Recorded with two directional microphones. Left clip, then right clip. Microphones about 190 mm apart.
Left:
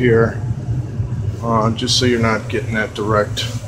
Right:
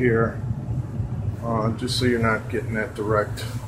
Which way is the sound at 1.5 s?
20° left (ahead or behind).